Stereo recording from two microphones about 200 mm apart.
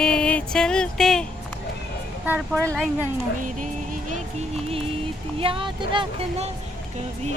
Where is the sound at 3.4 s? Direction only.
40° right (ahead or behind).